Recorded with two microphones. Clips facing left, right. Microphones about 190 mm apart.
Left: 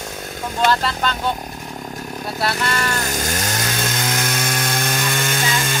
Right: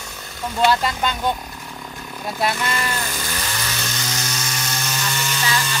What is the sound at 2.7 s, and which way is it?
Chainsaw, 45° left (ahead or behind).